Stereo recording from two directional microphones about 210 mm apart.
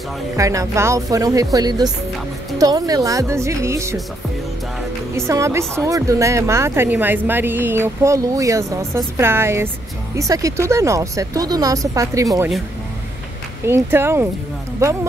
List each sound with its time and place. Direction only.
0.4 s speech: 15° right (ahead or behind)
5.1 s speech: 15° right (ahead or behind)
13.7 s speech: 10° right (ahead or behind)